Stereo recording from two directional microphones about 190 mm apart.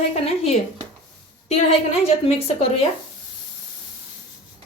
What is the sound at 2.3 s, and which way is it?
Speech, 30° left (ahead or behind).